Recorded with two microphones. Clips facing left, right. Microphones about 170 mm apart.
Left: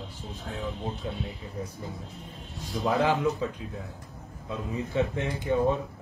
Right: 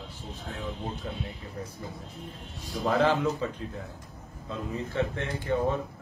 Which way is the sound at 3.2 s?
Centre (ahead or behind).